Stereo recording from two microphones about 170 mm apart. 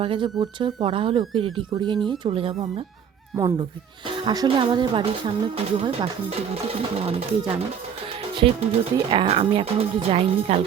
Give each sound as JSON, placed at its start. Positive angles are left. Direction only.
{"t": 0.0, "sound": "speech", "side_deg": -30}
{"t": 3.3, "sound": "speech", "side_deg": -20}